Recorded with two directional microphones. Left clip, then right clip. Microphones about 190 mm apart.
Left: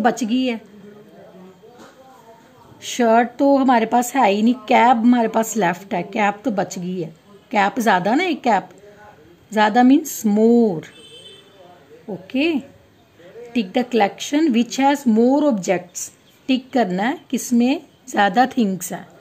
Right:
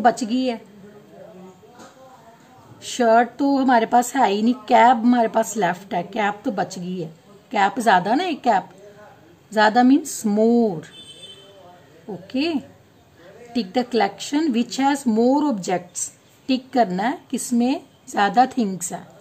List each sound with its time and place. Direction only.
0.0 s a woman's voice: 15° left (ahead or behind)
2.8 s a woman's voice: 20° left (ahead or behind)
12.3 s a woman's voice: 15° left (ahead or behind)